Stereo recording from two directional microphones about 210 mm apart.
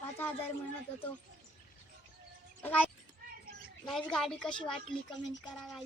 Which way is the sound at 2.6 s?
5° left (ahead or behind).